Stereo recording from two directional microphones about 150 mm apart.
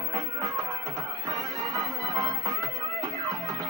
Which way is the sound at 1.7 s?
Centre (ahead or behind).